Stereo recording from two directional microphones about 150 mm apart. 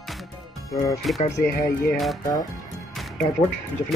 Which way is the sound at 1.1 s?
Centre (ahead or behind).